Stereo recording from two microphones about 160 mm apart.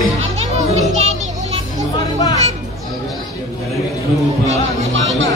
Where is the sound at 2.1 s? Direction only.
20° left (ahead or behind).